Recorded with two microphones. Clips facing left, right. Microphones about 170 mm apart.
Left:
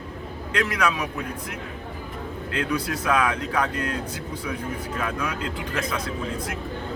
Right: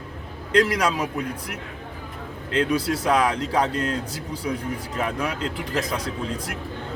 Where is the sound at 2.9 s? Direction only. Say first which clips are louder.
Right 1 dB; 35° right (ahead or behind).